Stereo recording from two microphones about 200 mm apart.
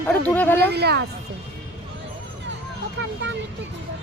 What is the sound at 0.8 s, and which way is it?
Speech, 55° right (ahead or behind).